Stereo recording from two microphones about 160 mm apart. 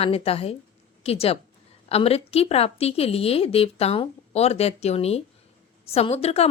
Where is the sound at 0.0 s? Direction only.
40° left (ahead or behind).